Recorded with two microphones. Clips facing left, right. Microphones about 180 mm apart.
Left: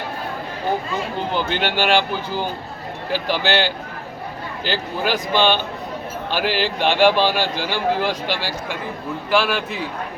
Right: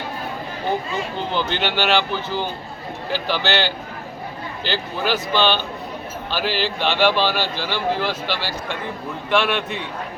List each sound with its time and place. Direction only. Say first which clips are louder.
1.5 s speech: left 2 dB; 50° left (ahead or behind)
2.0 s speech: left 1 dB; 10° left (ahead or behind)
4.6 s speech: left 1 dB; 45° left (ahead or behind)
5.1 s speech: left 1 dB; 15° left (ahead or behind)
6.3 s speech: left 2 dB; 50° left (ahead or behind)
6.9 s speech: left 3 dB; 15° left (ahead or behind)
9.3 s a man's voice: even; centre (ahead or behind)